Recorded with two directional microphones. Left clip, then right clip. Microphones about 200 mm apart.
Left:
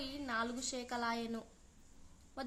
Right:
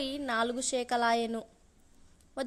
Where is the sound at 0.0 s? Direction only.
40° right (ahead or behind).